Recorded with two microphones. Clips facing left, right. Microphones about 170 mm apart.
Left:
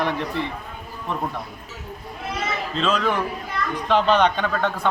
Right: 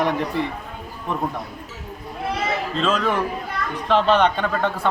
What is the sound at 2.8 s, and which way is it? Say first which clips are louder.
A man's voice: even; 5° right (ahead or behind).